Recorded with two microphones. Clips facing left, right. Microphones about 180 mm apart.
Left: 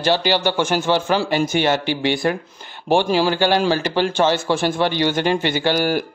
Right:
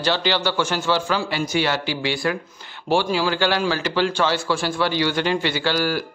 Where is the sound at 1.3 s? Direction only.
50° left (ahead or behind).